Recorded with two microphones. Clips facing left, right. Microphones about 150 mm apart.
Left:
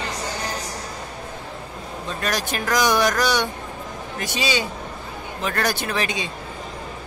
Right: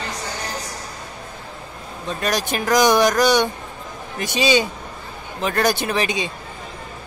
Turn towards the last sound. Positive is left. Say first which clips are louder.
# right 3 dB
turn(degrees=-20)  # may be behind; listen again after turning